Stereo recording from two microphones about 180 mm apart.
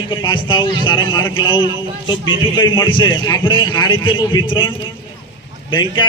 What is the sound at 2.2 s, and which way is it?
Speech, 90° left.